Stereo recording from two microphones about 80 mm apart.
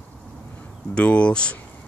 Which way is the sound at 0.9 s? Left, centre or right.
Centre.